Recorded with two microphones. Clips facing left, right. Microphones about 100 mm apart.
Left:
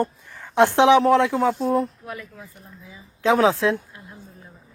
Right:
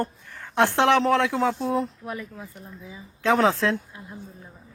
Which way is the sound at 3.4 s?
15° left (ahead or behind).